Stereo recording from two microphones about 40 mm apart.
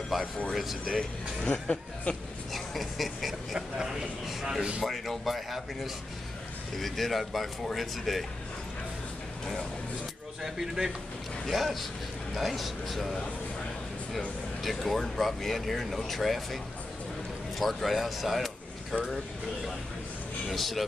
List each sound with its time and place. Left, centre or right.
0.1 s speech: centre
1.5 s speech: left
2.5 s speech: centre
3.5 s a man's voice: centre
4.8 s speech: centre
6.8 s speech: centre
10.4 s a man's voice: centre
14.6 s speech: centre
17.6 s speech: centre
20.5 s speech: centre